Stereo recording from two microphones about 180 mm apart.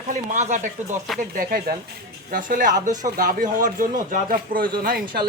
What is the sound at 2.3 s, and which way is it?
Speech, 50° right (ahead or behind).